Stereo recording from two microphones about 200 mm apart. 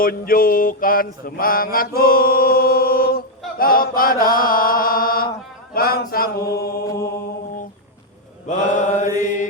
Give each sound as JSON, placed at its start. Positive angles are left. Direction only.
{"t": 0.0, "sound": "mantra", "side_deg": 45}
{"t": 3.6, "sound": "chant", "side_deg": 45}
{"t": 5.7, "sound": "mantra", "side_deg": 50}
{"t": 8.4, "sound": "mantra", "side_deg": 40}